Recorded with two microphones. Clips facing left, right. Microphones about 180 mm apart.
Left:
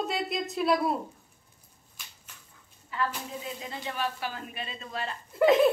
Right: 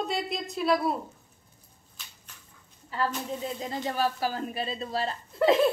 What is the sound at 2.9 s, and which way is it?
A woman's voice, 35° right (ahead or behind).